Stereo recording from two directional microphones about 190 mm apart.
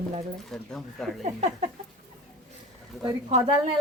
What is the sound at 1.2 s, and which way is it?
Speech, 40° right (ahead or behind).